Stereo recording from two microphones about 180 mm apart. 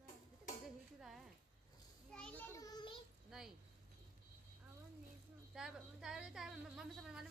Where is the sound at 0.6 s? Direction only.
Centre (ahead or behind).